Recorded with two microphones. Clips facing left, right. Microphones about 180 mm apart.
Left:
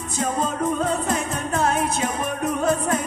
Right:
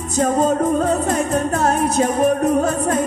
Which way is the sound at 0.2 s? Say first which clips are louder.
Right 7 dB; 45° right (ahead or behind).